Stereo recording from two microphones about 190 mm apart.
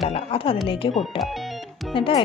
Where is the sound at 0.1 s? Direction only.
30° left (ahead or behind).